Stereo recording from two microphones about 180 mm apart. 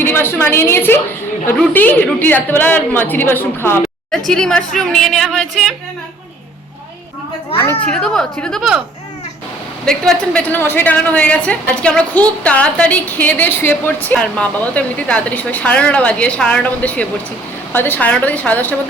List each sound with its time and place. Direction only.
0.0 s a woman's voice: 15° left (ahead or behind)
7.5 s a woman's voice: 10° left (ahead or behind)
9.8 s a woman's voice: 5° left (ahead or behind)